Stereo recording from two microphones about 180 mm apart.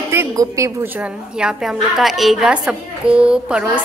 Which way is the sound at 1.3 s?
5° right (ahead or behind).